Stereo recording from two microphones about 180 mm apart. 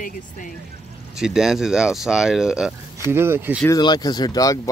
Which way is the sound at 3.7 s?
20° left (ahead or behind).